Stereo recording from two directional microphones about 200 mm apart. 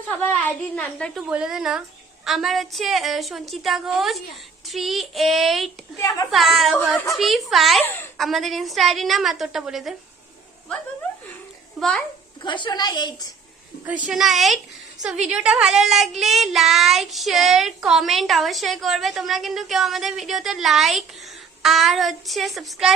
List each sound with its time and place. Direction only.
0.4 s child singing: 5° left (ahead or behind)
6.0 s a woman's voice: 15° left (ahead or behind)
6.3 s child singing: centre (ahead or behind)
11.8 s child singing: 5° left (ahead or behind)
12.4 s a woman's voice: 25° left (ahead or behind)
13.8 s child singing: 5° right (ahead or behind)